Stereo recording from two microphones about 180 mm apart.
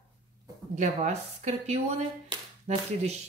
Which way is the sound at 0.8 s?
40° right (ahead or behind).